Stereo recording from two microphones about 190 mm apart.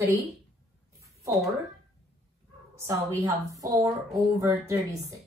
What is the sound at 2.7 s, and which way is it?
A woman's voice, 15° right (ahead or behind).